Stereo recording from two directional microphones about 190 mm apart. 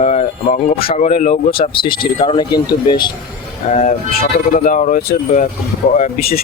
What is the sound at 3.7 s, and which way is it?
Speech, 40° left (ahead or behind).